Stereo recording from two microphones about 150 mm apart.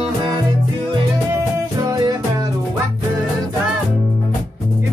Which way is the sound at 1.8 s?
25° right (ahead or behind).